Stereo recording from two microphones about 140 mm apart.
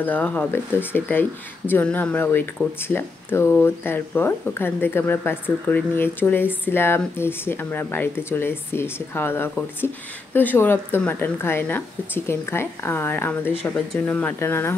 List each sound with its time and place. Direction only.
0.0 s speech: 15° left (ahead or behind)